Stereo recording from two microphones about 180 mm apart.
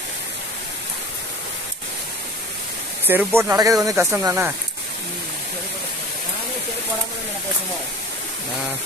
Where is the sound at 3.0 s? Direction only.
10° right (ahead or behind).